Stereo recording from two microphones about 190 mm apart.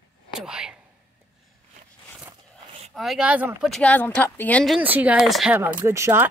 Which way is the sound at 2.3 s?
30° right (ahead or behind).